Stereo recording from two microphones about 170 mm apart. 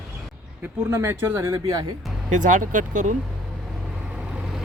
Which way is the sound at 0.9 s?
15° right (ahead or behind).